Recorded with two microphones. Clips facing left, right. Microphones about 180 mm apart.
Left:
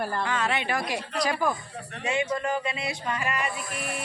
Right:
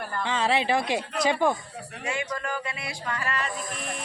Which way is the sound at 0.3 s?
30° right (ahead or behind).